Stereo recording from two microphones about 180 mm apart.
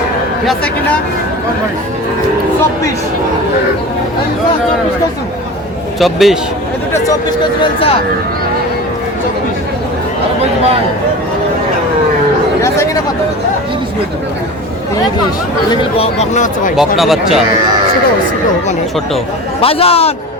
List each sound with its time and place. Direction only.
0.4 s speech: 5° left (ahead or behind)
6.0 s speech: centre (ahead or behind)
6.9 s speech: 20° left (ahead or behind)
15.7 s speech: 25° left (ahead or behind)
16.3 s speech: 45° left (ahead or behind)
16.7 s speech: centre (ahead or behind)
19.6 s a man's voice: 35° left (ahead or behind)